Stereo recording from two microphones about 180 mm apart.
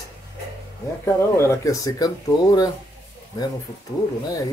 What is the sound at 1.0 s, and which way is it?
Speech, 15° left (ahead or behind).